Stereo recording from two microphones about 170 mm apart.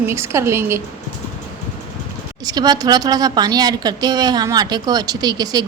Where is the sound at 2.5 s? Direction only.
25° right (ahead or behind).